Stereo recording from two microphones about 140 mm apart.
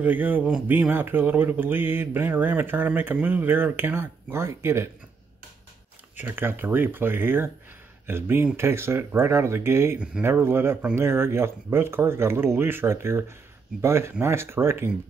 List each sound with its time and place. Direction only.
0.0 s speech: 10° right (ahead or behind)
6.1 s speech: 15° right (ahead or behind)